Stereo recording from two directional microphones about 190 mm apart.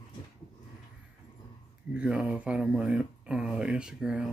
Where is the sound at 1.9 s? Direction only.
5° right (ahead or behind).